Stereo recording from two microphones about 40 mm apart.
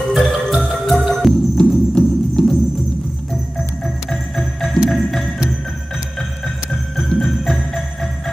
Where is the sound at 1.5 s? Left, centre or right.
Centre.